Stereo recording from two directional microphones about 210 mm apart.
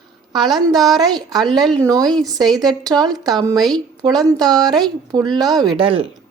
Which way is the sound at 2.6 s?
20° right (ahead or behind).